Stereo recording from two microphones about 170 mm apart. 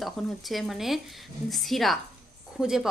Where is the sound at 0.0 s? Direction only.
Centre (ahead or behind).